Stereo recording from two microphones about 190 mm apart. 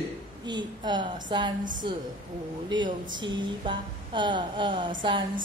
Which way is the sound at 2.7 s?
25° right (ahead or behind).